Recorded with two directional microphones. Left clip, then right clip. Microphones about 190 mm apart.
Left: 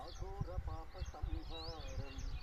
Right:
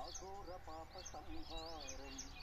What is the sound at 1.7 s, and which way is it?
Speech, 35° right (ahead or behind).